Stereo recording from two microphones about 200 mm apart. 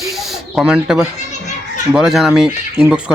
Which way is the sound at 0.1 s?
Centre (ahead or behind).